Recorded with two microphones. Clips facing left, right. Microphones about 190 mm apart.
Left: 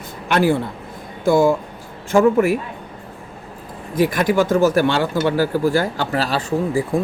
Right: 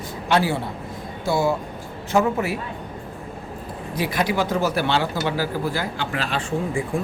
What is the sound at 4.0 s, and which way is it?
A man's voice, 50° left (ahead or behind).